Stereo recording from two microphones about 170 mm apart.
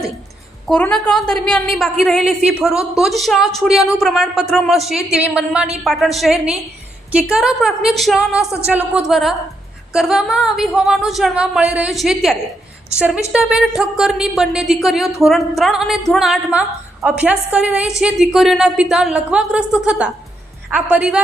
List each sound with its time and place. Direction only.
0.7 s a woman's voice: 5° left (ahead or behind)
8.4 s speech: 15° left (ahead or behind)
9.0 s a woman's voice: centre (ahead or behind)